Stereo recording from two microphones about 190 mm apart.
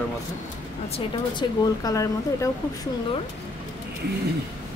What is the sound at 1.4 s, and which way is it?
Speech, 25° left (ahead or behind).